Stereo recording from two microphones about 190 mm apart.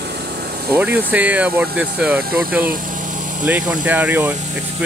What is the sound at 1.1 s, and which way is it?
Speech, 10° right (ahead or behind).